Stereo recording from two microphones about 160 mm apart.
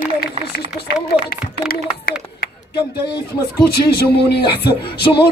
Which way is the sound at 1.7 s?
70° left (ahead or behind).